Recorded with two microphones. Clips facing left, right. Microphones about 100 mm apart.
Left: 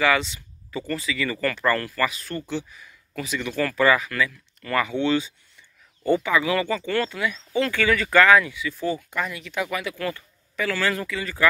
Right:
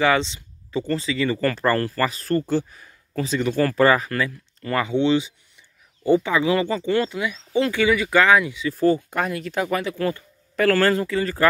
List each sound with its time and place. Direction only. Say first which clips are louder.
0.0 s speech: right 2 dB; 30° right (ahead or behind)
8.6 s speech: right 8 dB; 40° right (ahead or behind)
10.5 s speech: right 8 dB; 50° right (ahead or behind)
10.9 s speech: right 6 dB; 35° right (ahead or behind)